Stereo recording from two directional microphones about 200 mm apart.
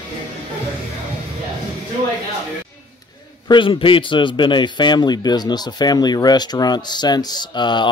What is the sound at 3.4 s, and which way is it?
A man's voice, 25° left (ahead or behind).